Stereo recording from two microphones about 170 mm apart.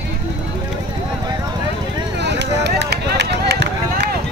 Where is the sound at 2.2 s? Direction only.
85° right.